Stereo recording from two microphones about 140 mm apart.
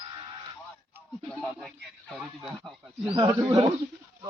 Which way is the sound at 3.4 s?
30° right (ahead or behind).